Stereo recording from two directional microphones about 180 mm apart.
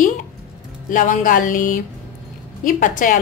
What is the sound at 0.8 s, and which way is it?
A woman's voice, 45° left (ahead or behind).